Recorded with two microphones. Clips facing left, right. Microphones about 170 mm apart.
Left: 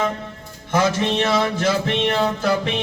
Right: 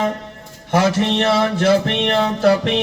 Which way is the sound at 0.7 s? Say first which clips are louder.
Right 3 dB; 65° right (ahead or behind).